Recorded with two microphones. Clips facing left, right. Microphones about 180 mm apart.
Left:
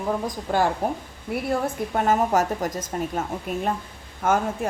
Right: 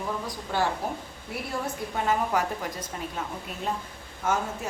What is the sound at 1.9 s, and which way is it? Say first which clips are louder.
A woman's voice: left 5 dB; 45° left (ahead or behind).